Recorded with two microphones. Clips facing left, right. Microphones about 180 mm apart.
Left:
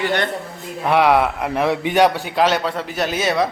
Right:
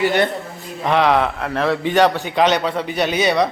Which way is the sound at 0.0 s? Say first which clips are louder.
Right 4 dB; 10° right (ahead or behind).